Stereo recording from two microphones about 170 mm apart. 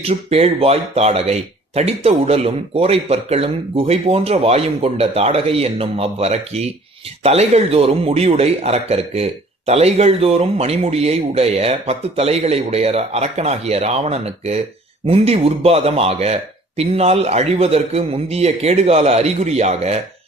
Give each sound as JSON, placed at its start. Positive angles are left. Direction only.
{"t": 0.0, "sound": "a man's voice", "side_deg": -35}